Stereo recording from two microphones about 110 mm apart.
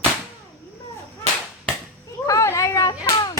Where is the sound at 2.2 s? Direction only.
30° left (ahead or behind).